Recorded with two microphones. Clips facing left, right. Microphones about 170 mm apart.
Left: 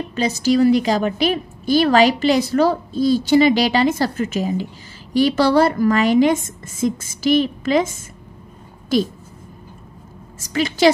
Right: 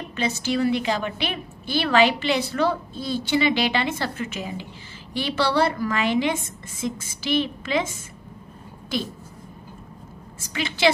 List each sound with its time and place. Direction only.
0.1 s a woman's voice: 40° left (ahead or behind)
10.5 s a woman's voice: 40° left (ahead or behind)